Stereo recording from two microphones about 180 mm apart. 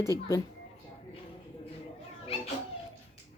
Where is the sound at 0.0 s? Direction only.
15° left (ahead or behind).